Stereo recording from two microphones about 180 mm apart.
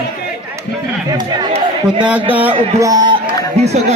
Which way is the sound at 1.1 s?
25° right (ahead or behind).